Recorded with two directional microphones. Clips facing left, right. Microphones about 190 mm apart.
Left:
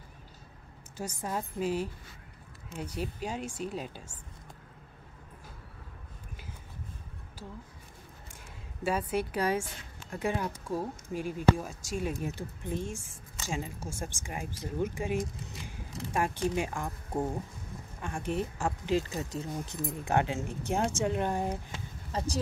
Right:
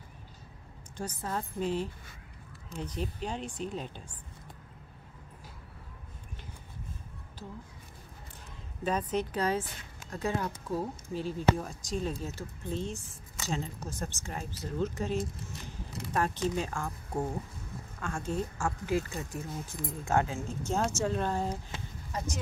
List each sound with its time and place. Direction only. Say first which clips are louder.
0.9 s speech: even; 10° left (ahead or behind)
8.8 s speech: even; 10° left (ahead or behind)
22.1 s speech: left 2 dB; 30° left (ahead or behind)